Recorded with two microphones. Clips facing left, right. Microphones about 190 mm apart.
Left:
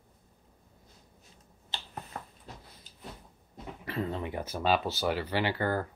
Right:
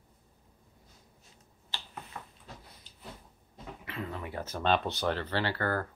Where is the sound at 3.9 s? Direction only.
35° left (ahead or behind).